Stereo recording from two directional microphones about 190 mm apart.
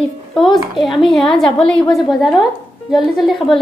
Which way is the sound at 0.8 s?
Centre (ahead or behind).